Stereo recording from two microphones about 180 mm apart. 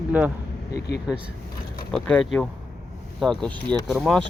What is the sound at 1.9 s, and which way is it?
Speech, 5° left (ahead or behind).